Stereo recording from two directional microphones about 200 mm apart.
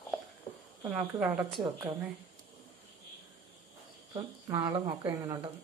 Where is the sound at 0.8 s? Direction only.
10° right (ahead or behind).